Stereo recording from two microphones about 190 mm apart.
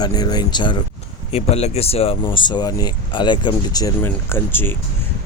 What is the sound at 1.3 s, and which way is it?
Speech, 35° left (ahead or behind).